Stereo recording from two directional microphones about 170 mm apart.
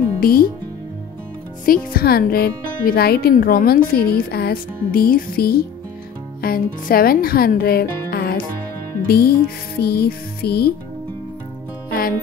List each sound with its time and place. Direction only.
0.2 s speech: 60° left (ahead or behind)
1.7 s speech: 65° left (ahead or behind)
9.8 s music: 70° left (ahead or behind)